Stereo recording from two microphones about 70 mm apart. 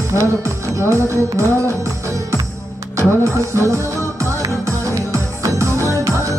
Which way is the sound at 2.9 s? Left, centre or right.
Right.